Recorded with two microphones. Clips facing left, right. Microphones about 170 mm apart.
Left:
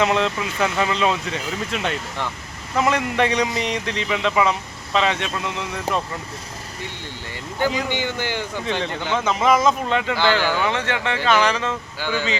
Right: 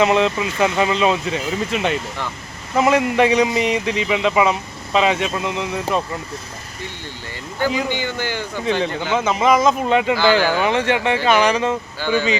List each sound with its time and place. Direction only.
0.0 s a man's voice: 5° right (ahead or behind)
7.9 s a man's voice: 20° left (ahead or behind)
8.6 s speech: 5° right (ahead or behind)
9.9 s a man's voice: 15° right (ahead or behind)